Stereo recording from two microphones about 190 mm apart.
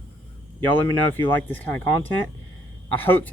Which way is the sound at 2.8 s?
10° left (ahead or behind).